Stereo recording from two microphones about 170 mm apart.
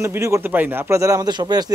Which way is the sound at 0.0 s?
15° right (ahead or behind).